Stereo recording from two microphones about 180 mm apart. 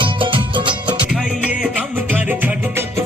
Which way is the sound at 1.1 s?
5° right (ahead or behind).